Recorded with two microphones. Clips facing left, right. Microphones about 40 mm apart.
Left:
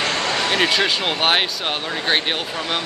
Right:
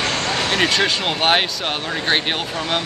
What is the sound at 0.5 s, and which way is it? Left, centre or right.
Speech, centre.